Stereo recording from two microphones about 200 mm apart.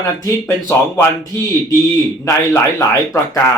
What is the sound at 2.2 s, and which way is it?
Speech, 15° left (ahead or behind).